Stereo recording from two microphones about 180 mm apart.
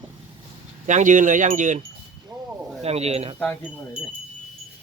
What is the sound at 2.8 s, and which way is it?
Speech, 35° right (ahead or behind).